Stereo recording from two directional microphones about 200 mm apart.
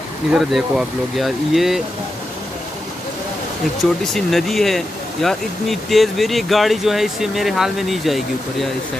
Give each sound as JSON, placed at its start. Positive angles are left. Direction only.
{"t": 0.3, "sound": "speech", "side_deg": 0}
{"t": 4.0, "sound": "speech", "side_deg": 0}